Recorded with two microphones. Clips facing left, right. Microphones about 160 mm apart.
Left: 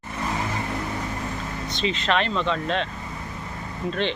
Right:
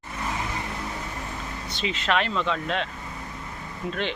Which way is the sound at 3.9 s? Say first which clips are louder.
Left 3 dB; 5° right (ahead or behind).